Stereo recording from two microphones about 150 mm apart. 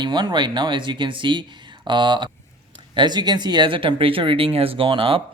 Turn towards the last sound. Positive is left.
turn(degrees=-35)  # may be behind; listen again after turning